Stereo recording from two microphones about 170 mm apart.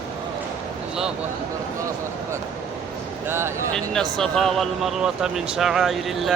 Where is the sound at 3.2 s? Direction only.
15° right (ahead or behind).